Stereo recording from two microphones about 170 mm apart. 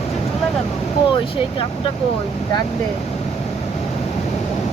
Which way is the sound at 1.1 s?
30° left (ahead or behind).